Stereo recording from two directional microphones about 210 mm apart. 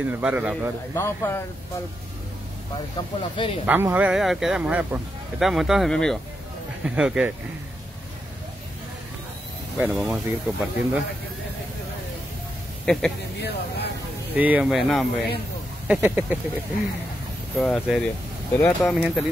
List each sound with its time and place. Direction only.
0.0 s speech: 5° right (ahead or behind)
0.9 s speech: 15° left (ahead or behind)
3.2 s speech: 25° left (ahead or behind)
3.6 s speech: 10° right (ahead or behind)
9.8 s speech: 5° right (ahead or behind)
12.8 s speech: 5° left (ahead or behind)
13.4 s speech: 50° left (ahead or behind)
14.3 s speech: 5° right (ahead or behind)
17.6 s speech: centre (ahead or behind)
18.9 s speech: 5° right (ahead or behind)